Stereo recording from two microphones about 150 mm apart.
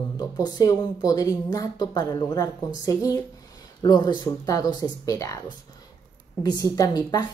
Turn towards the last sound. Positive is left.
turn(degrees=25)  # may be behind; listen again after turning